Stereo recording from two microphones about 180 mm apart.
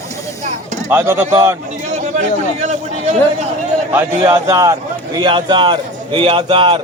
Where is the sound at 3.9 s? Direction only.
15° right (ahead or behind).